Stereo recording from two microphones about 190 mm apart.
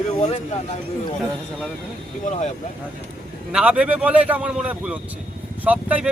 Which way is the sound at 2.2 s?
35° left (ahead or behind).